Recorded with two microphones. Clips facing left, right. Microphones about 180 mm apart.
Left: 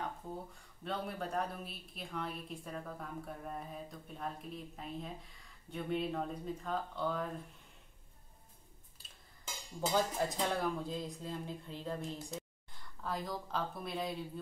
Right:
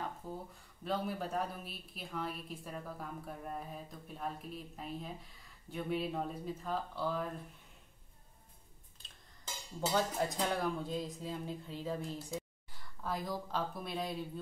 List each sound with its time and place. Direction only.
0.8 s speech: centre (ahead or behind)
9.8 s speech: centre (ahead or behind)